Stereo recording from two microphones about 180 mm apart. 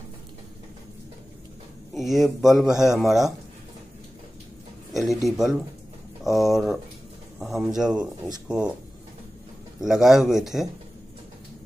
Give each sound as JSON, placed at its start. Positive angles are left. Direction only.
{"t": 2.0, "sound": "speech", "side_deg": 0}
{"t": 4.9, "sound": "speech", "side_deg": 0}
{"t": 9.8, "sound": "speech", "side_deg": 0}